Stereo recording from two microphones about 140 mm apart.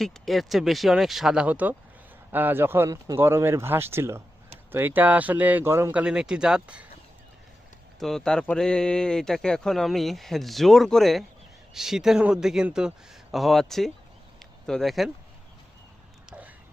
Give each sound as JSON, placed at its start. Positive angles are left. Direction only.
{"t": 0.0, "sound": "speech", "side_deg": 0}
{"t": 7.9, "sound": "speech", "side_deg": 0}
{"t": 14.3, "sound": "a sound", "side_deg": 0}